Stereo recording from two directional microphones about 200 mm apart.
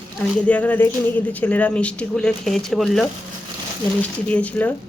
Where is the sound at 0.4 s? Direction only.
5° left (ahead or behind).